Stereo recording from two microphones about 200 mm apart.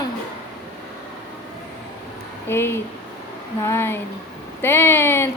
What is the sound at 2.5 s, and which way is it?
A woman's voice, 10° left (ahead or behind).